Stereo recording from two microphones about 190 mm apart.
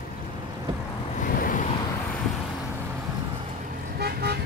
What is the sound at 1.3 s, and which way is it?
Vehicle, 45° left (ahead or behind).